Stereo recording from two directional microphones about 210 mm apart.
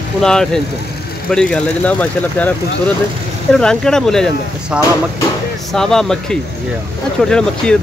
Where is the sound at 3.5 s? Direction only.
5° left (ahead or behind).